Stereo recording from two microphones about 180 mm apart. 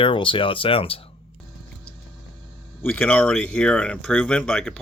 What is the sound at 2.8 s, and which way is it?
Speech, 10° left (ahead or behind).